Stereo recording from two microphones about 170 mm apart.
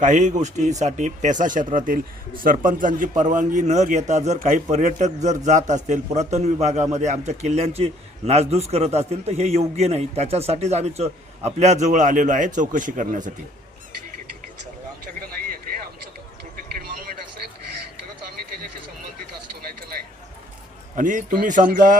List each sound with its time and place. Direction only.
0.0 s a man's voice: 45° right (ahead or behind)
20.9 s speech: 50° right (ahead or behind)